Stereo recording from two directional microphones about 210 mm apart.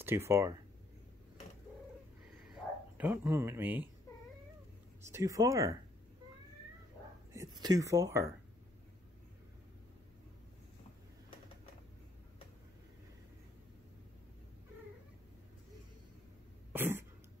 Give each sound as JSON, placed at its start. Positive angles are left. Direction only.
{"t": 0.0, "sound": "speech", "side_deg": -10}
{"t": 3.0, "sound": "speech", "side_deg": -10}
{"t": 5.1, "sound": "speech", "side_deg": -15}
{"t": 7.3, "sound": "speech", "side_deg": -20}
{"t": 16.7, "sound": "throat clearing", "side_deg": -10}